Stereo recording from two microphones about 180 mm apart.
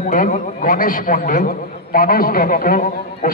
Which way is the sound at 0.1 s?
45° left (ahead or behind).